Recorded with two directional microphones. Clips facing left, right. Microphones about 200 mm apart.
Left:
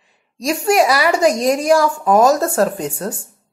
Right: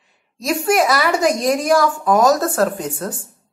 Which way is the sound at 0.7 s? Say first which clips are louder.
Left 3 dB; 10° left (ahead or behind).